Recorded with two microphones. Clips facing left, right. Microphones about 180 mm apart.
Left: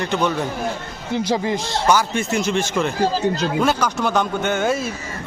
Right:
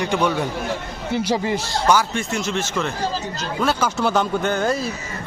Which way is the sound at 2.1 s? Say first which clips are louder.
Left 3 dB; centre (ahead or behind).